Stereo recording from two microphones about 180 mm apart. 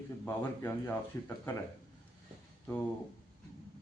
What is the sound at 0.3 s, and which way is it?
A man's voice, 10° left (ahead or behind).